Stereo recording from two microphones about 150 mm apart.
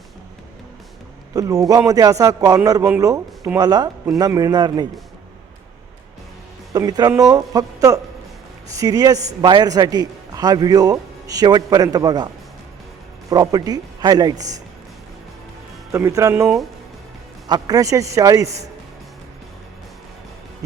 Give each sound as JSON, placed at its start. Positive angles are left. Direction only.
{"t": 1.3, "sound": "a man's voice", "side_deg": -20}
{"t": 6.7, "sound": "a man's voice", "side_deg": -25}
{"t": 13.3, "sound": "a man's voice", "side_deg": -25}
{"t": 15.9, "sound": "a man's voice", "side_deg": -20}
{"t": 16.3, "sound": "speech", "side_deg": -10}
{"t": 17.5, "sound": "a man's voice", "side_deg": -25}